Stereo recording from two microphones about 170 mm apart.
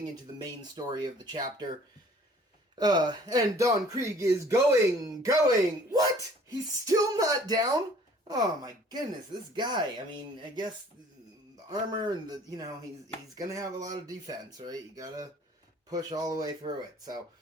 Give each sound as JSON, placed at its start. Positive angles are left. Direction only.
{"t": 0.4, "sound": "speech", "side_deg": -25}
{"t": 2.7, "sound": "speech", "side_deg": -25}